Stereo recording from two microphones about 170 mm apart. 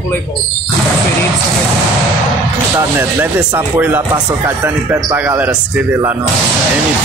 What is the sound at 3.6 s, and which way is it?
Speech, 10° right (ahead or behind).